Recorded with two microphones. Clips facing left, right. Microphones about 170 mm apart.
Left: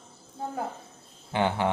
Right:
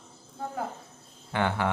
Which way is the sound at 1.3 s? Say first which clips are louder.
Left 2 dB; 20° left (ahead or behind).